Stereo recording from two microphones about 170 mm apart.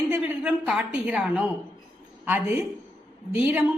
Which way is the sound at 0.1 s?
5° right (ahead or behind).